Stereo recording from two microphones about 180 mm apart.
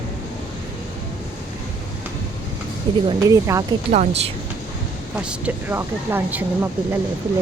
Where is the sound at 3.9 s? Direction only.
40° right (ahead or behind).